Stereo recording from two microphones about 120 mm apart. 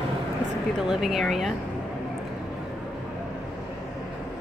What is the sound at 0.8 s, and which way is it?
Speech, 5° right (ahead or behind).